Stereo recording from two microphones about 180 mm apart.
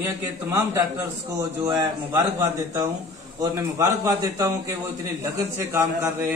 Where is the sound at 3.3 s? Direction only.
20° right (ahead or behind).